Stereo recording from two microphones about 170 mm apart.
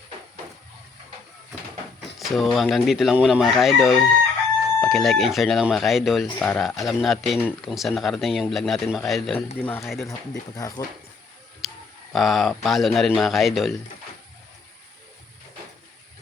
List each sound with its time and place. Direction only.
2.1 s speech: centre (ahead or behind)
9.6 s speech: 15° left (ahead or behind)
11.6 s tick: centre (ahead or behind)
12.1 s speech: centre (ahead or behind)